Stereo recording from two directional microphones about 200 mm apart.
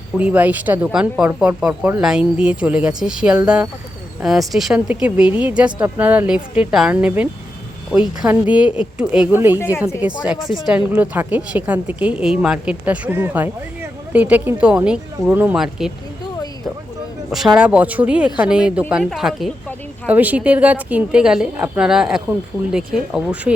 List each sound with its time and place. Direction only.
0.2 s a woman's voice: 5° right (ahead or behind)
17.3 s a woman's voice: centre (ahead or behind)